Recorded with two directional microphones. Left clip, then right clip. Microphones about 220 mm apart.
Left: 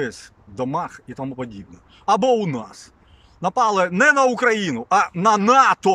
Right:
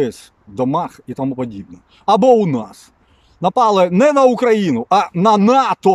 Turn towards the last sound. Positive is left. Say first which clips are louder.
# right 1 dB
turn(degrees=-20)  # may be behind; listen again after turning